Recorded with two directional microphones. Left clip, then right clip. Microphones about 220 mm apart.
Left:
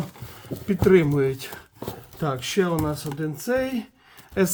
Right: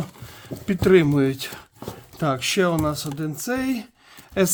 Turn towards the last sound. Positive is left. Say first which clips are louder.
# right 2 dB
turn(degrees=-50)  # may be behind; listen again after turning